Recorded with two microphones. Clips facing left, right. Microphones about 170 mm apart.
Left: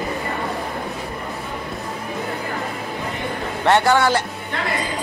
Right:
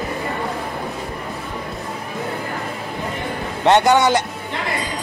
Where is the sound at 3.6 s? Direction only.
20° right (ahead or behind).